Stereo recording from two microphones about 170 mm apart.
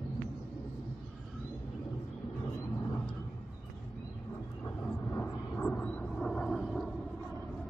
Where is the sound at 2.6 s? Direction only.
20° left (ahead or behind).